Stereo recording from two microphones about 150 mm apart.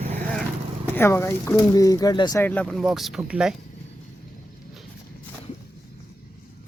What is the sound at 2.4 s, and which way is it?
Speech, 10° left (ahead or behind).